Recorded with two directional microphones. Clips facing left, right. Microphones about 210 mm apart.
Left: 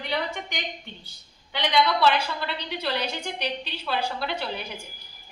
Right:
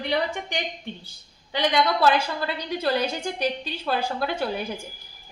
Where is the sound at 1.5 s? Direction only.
45° right (ahead or behind).